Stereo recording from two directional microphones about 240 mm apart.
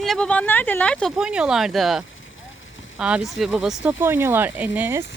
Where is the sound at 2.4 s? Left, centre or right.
Left.